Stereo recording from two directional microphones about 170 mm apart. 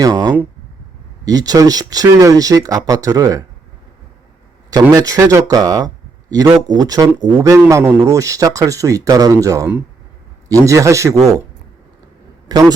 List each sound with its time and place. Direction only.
0.0 s speech: 25° right (ahead or behind)
4.7 s a man's voice: 20° right (ahead or behind)
12.5 s speech: 25° right (ahead or behind)